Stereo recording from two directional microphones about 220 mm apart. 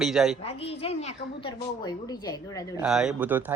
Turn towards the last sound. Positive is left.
turn(degrees=-10)  # may be behind; listen again after turning